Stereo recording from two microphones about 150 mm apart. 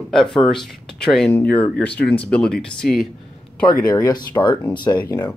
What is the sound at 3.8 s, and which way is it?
Speech, 25° left (ahead or behind).